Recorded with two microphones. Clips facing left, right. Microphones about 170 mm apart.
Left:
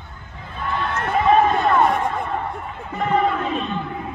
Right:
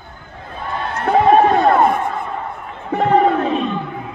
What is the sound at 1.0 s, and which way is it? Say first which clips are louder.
Run: right 5 dB; 40° right (ahead or behind).